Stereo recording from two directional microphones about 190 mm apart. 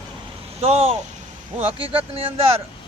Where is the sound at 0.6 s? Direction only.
30° right (ahead or behind).